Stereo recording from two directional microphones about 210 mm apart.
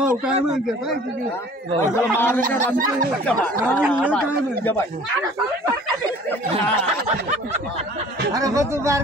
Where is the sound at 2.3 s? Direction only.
40° right (ahead or behind).